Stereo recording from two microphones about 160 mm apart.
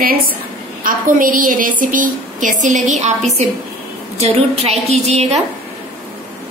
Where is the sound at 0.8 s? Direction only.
60° right (ahead or behind); by 5.4 s 45° right (ahead or behind).